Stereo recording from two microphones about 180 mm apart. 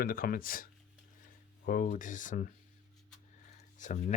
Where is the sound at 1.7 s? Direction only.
50° left (ahead or behind).